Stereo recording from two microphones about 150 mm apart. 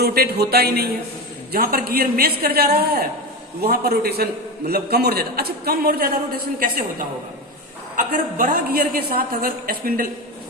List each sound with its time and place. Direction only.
0.0 s a man's voice: 90° right; by 6.8 s 70° right (ahead or behind)
7.9 s a woman's voice: 60° right (ahead or behind)